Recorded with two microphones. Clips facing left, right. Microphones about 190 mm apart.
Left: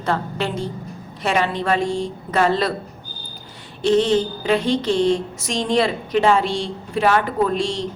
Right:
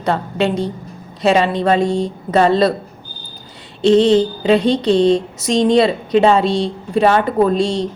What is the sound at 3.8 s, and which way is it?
A woman's voice, 20° right (ahead or behind).